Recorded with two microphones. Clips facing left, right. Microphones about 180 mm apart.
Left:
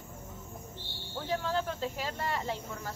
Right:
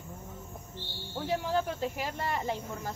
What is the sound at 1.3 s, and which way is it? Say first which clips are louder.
A woman's voice: right 2 dB; 15° right (ahead or behind).